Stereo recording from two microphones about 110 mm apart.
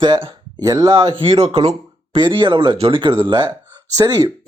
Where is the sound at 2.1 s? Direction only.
50° right (ahead or behind).